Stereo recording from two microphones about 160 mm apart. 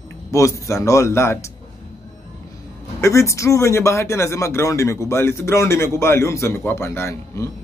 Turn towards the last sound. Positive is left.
turn(degrees=15)  # may be behind; listen again after turning